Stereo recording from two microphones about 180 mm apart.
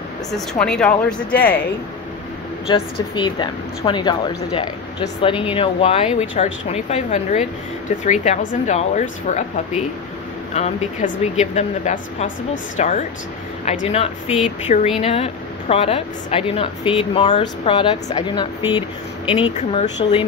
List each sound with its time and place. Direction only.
0.3 s speech: 5° left (ahead or behind)
2.7 s a woman's voice: 25° left (ahead or behind)
19.5 s speech: 40° left (ahead or behind)
20.0 s speech: 25° left (ahead or behind)